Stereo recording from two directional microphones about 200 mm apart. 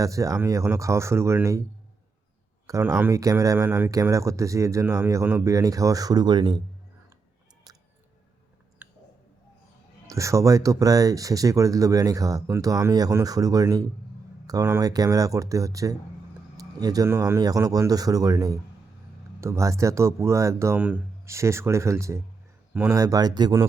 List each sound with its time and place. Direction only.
0.0 s speech: 15° right (ahead or behind)
2.6 s speech: 15° right (ahead or behind)
8.8 s a sound: 10° right (ahead or behind)
10.1 s speech: 15° right (ahead or behind)